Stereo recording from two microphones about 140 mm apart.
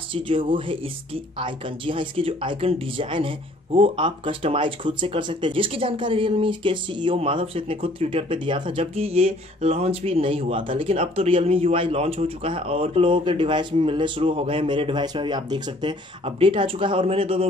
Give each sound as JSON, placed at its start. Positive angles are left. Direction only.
{"t": 0.1, "sound": "speech", "side_deg": -40}